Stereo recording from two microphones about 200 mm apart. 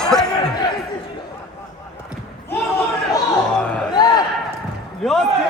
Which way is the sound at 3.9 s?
20° left (ahead or behind).